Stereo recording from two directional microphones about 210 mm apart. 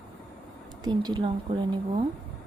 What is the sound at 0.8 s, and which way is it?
A woman's voice, 20° right (ahead or behind).